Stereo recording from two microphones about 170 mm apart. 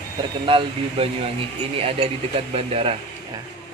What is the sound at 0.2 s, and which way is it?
Speech, 30° right (ahead or behind).